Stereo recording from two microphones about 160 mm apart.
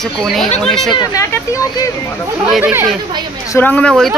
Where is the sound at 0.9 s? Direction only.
20° left (ahead or behind).